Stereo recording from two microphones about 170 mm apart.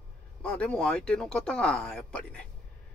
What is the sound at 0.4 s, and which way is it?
Speech, 5° left (ahead or behind).